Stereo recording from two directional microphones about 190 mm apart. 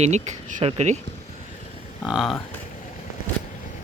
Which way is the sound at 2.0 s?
Centre (ahead or behind).